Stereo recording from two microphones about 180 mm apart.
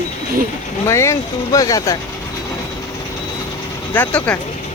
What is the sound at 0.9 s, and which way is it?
Speech, 15° left (ahead or behind).